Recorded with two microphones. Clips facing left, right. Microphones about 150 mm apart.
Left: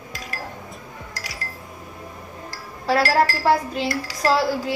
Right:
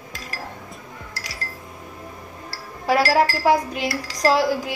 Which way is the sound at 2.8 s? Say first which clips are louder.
Right 1 dB; 15° right (ahead or behind).